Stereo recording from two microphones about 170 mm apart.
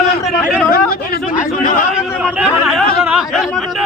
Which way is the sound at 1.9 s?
5° right (ahead or behind).